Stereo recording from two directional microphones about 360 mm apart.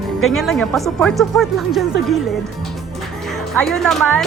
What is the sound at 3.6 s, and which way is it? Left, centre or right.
Speech, centre.